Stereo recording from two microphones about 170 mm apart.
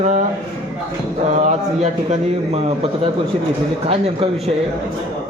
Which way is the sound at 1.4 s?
40° right (ahead or behind).